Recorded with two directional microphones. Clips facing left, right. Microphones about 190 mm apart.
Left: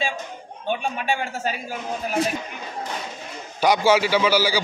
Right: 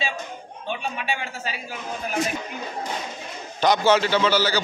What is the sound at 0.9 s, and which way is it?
Speech, 45° left (ahead or behind).